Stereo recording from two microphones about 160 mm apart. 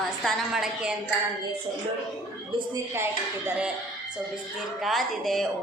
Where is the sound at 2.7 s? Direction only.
15° right (ahead or behind).